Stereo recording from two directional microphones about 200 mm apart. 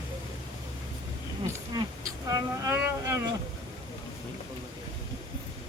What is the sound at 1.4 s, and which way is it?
Speech, 15° right (ahead or behind).